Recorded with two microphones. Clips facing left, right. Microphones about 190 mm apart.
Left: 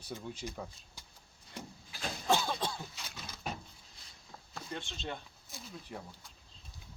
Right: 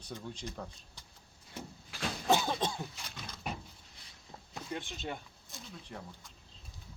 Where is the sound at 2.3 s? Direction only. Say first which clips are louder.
Right 2 dB; 20° right (ahead or behind).